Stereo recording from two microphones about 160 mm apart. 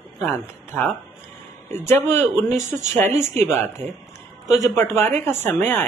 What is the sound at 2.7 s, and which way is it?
Speech, 45° right (ahead or behind).